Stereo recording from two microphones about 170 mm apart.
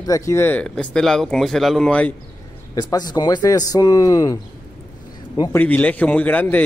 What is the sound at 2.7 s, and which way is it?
A man's voice, 20° left (ahead or behind).